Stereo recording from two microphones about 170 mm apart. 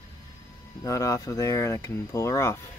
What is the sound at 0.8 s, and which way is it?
Speech, 20° left (ahead or behind).